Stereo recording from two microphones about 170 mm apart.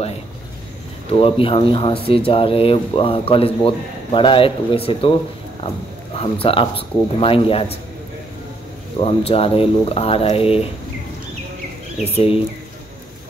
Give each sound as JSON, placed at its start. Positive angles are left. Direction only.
{"t": 1.4, "sound": "speech", "side_deg": 30}
{"t": 9.0, "sound": "speech", "side_deg": 35}
{"t": 12.0, "sound": "speech", "side_deg": 35}